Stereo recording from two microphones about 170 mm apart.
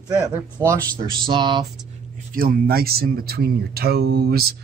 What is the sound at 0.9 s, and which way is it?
Speech, 25° right (ahead or behind).